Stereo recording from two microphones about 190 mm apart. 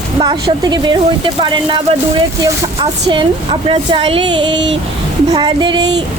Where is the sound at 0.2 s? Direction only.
20° right (ahead or behind).